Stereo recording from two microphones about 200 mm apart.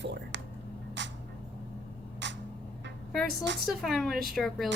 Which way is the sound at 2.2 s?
65° right (ahead or behind).